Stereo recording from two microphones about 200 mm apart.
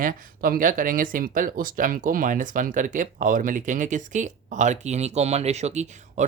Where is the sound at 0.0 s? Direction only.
45° right (ahead or behind).